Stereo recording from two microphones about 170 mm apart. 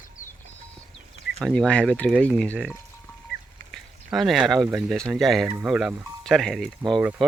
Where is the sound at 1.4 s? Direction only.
Centre (ahead or behind).